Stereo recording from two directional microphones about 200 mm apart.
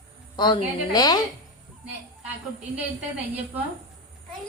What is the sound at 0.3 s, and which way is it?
Speech, 20° left (ahead or behind).